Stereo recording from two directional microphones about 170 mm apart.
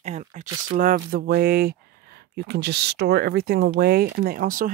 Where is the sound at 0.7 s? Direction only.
55° right (ahead or behind).